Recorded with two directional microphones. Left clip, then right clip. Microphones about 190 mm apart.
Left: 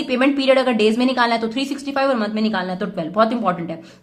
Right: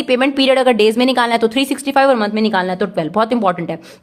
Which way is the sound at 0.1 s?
50° right (ahead or behind).